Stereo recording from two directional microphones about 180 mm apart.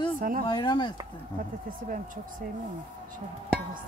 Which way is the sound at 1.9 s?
50° right (ahead or behind).